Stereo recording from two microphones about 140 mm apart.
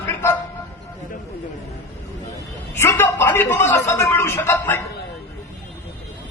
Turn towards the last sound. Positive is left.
turn(degrees=15)  # may be behind; listen again after turning